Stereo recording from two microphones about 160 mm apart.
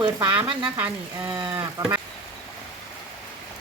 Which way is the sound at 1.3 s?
30° right (ahead or behind).